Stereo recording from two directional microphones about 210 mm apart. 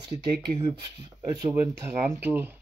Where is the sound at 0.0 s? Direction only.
20° right (ahead or behind).